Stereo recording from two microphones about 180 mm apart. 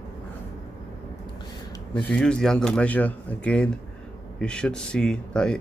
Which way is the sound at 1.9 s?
10° left (ahead or behind).